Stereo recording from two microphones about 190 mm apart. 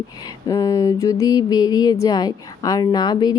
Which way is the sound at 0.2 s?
20° left (ahead or behind).